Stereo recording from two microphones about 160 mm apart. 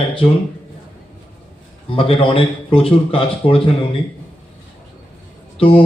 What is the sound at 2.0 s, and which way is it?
Speech, 35° left (ahead or behind).